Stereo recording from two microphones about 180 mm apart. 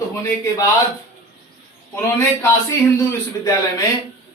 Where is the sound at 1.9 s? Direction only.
15° left (ahead or behind).